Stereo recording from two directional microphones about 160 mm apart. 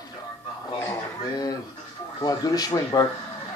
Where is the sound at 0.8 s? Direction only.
20° left (ahead or behind).